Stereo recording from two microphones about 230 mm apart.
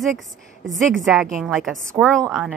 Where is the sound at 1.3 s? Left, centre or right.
Centre.